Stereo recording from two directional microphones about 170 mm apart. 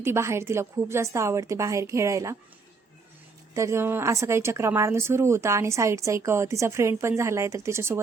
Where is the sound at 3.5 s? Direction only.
15° right (ahead or behind).